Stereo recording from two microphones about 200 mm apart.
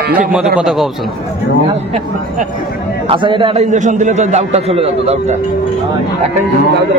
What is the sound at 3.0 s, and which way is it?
A man's voice, 25° right (ahead or behind).